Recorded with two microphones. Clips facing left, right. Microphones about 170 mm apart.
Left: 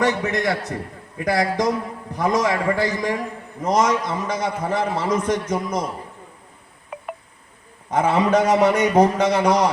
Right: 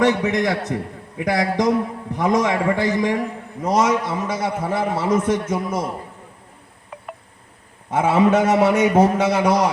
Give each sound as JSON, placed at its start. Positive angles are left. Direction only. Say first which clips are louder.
{"t": 0.0, "sound": "a man's voice", "louder": "right 3 dB", "side_deg": -20}
{"t": 3.6, "sound": "a man's voice", "louder": "right 1 dB", "side_deg": -10}
{"t": 7.9, "sound": "a man's voice", "louder": "right 1 dB", "side_deg": -5}